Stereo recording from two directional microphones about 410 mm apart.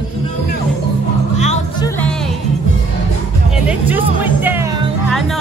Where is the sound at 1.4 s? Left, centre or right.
Centre.